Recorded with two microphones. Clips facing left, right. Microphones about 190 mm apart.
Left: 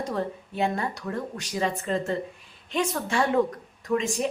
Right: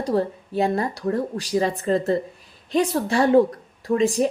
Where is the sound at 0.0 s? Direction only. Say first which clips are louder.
Right 7 dB; 35° right (ahead or behind).